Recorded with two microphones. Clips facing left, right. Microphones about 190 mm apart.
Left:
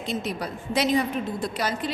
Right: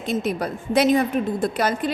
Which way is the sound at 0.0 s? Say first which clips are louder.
Right 5 dB; 50° right (ahead or behind).